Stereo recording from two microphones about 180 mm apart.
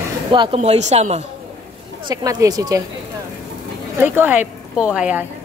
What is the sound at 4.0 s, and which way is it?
Speech, 10° right (ahead or behind).